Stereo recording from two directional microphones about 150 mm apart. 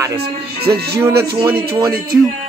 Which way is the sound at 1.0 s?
20° right (ahead or behind).